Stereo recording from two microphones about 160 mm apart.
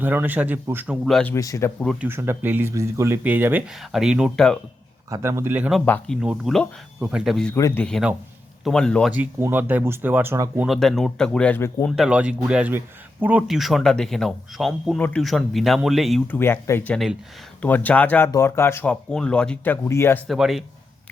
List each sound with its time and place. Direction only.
0.0 s speech: 10° right (ahead or behind)
1.0 s speech: centre (ahead or behind)
1.3 s speech: 20° left (ahead or behind)
2.0 s speech: 15° right (ahead or behind); by 4.6 s 5° left (ahead or behind)
5.1 s speech: 20° right (ahead or behind)
5.8 s speech: 10° left (ahead or behind)
6.2 s speech: 5° right (ahead or behind)
7.5 s speech: 15° left (ahead or behind)
7.9 s speech: centre (ahead or behind)
9.1 s speech: 10° right (ahead or behind)
10.7 s speech: centre (ahead or behind)
11.9 s speech: 5° right (ahead or behind)
16.2 s speech: 10° left (ahead or behind)
20.2 s speech: centre (ahead or behind)